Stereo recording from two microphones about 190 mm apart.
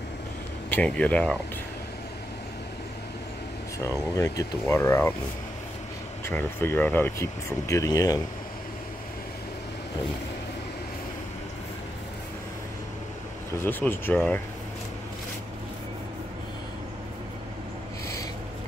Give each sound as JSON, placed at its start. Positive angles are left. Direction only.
{"t": 0.7, "sound": "speech", "side_deg": 5}
{"t": 3.8, "sound": "speech", "side_deg": 15}
{"t": 6.2, "sound": "speech", "side_deg": 10}
{"t": 13.6, "sound": "speech", "side_deg": 10}